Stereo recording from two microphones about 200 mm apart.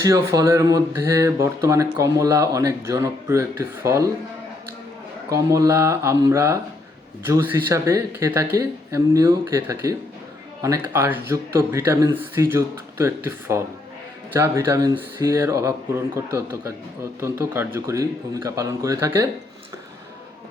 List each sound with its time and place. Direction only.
0.0 s speech: 15° right (ahead or behind)
5.3 s speech: 15° right (ahead or behind)